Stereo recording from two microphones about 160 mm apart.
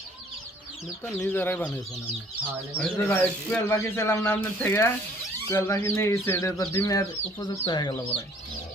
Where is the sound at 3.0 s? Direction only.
15° left (ahead or behind).